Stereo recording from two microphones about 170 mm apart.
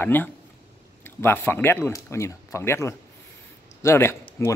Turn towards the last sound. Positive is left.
turn(degrees=15)  # may be behind; listen again after turning